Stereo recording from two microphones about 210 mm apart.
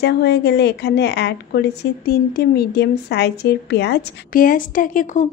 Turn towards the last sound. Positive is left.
turn(degrees=35)  # may be behind; listen again after turning